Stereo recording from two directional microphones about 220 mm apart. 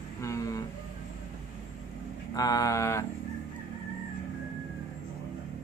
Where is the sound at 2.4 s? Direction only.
15° left (ahead or behind).